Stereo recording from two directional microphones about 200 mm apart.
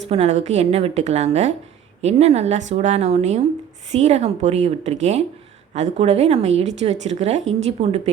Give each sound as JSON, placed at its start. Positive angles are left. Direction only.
{"t": 0.1, "sound": "a woman's voice", "side_deg": -30}